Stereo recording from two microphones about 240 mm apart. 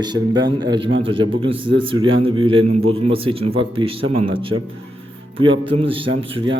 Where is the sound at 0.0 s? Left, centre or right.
Centre.